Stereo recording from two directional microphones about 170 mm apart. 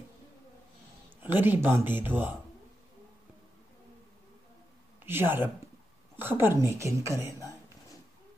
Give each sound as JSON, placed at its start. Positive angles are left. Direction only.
{"t": 1.2, "sound": "a woman's voice", "side_deg": -10}
{"t": 5.0, "sound": "a woman's voice", "side_deg": -15}
{"t": 7.3, "sound": "a sound", "side_deg": 20}